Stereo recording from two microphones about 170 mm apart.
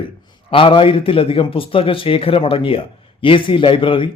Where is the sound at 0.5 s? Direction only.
30° left (ahead or behind).